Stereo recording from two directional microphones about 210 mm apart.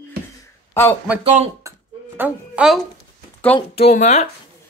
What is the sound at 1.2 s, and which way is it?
Speech, 30° right (ahead or behind).